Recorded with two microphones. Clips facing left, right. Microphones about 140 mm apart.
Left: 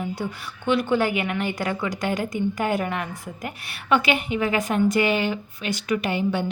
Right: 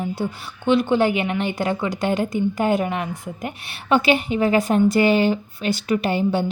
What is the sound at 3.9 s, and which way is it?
A woman's voice, 30° right (ahead or behind).